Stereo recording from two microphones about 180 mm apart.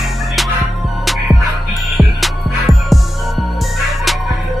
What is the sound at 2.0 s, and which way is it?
Music, centre (ahead or behind).